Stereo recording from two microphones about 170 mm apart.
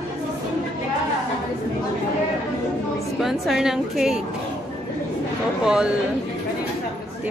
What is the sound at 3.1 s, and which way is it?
A woman's voice, centre (ahead or behind).